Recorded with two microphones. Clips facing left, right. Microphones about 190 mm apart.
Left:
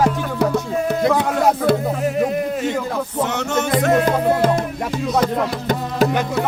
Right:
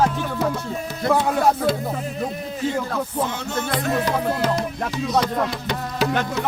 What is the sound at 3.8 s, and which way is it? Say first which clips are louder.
Music: left 7 dB; 85° left.